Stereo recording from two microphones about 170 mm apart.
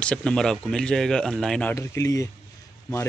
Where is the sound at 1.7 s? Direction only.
20° left (ahead or behind).